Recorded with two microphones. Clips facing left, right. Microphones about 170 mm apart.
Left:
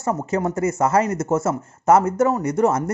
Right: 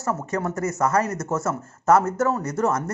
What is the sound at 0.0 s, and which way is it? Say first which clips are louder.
A man's voice: left 4 dB; 20° left (ahead or behind).